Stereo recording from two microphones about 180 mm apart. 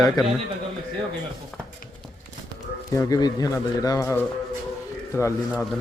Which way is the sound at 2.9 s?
20° left (ahead or behind).